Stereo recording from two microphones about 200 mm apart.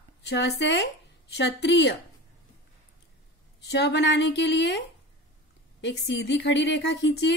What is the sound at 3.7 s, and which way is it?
Speech, 55° left (ahead or behind).